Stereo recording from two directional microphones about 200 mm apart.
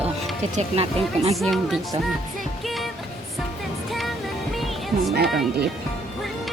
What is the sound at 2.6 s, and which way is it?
Music, centre (ahead or behind).